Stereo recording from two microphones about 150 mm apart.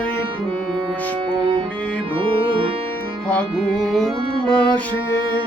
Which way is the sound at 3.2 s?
5° left (ahead or behind).